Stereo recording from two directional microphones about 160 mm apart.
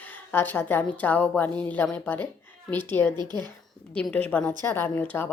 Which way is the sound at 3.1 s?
25° right (ahead or behind).